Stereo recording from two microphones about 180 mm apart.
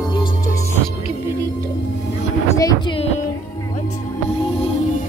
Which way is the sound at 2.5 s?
25° left (ahead or behind).